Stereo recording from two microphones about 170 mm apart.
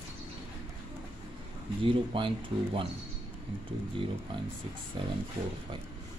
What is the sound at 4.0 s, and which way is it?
Speech, 30° right (ahead or behind).